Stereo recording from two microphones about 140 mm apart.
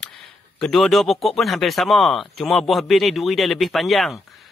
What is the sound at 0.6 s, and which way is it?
Speech, centre (ahead or behind).